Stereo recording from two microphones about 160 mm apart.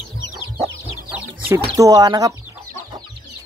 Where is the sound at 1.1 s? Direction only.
15° right (ahead or behind).